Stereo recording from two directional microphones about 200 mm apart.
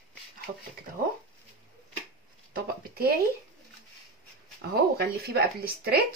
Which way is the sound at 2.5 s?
50° right (ahead or behind).